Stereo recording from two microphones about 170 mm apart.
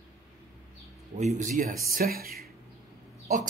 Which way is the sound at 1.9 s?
60° right (ahead or behind).